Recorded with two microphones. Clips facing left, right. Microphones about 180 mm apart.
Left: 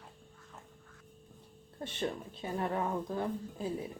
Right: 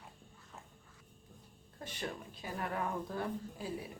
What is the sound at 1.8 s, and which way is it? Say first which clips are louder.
A woman's voice: left 6 dB; 25° left (ahead or behind).